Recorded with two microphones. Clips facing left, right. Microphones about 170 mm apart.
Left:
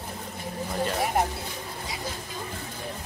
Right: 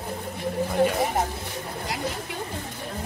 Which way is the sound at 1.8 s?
70° right (ahead or behind).